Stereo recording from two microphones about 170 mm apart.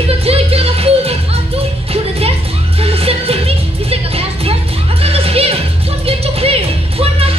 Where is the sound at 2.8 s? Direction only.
35° right (ahead or behind).